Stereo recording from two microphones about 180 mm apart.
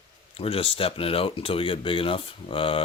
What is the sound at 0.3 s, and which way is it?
Speech, 30° left (ahead or behind).